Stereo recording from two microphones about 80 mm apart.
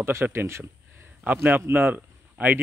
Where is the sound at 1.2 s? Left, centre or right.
Right.